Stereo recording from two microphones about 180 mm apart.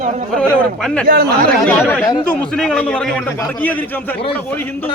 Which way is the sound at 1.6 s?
10° left (ahead or behind).